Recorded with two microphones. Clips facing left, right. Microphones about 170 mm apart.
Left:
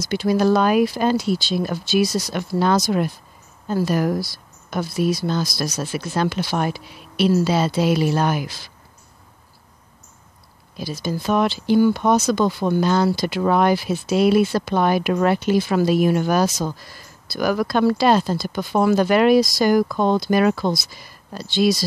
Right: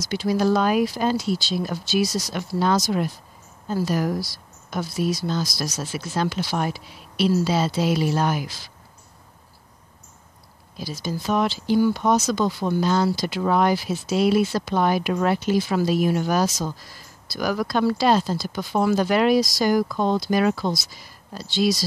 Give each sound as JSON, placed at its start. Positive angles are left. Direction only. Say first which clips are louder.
{"t": 0.0, "sound": "speech", "louder": "left 3 dB", "side_deg": 55}
{"t": 10.8, "sound": "speech", "louder": "left 3 dB", "side_deg": 60}